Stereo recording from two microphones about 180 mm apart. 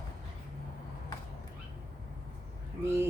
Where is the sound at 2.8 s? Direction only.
15° right (ahead or behind).